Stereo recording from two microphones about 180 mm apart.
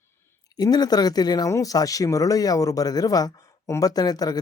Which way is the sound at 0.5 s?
20° left (ahead or behind).